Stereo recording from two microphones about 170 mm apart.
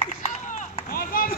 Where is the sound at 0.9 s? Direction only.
55° left (ahead or behind).